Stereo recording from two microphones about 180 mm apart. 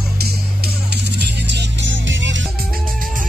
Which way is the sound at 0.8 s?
65° right (ahead or behind).